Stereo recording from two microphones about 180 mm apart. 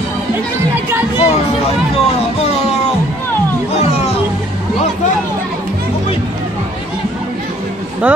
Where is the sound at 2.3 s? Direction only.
35° left (ahead or behind).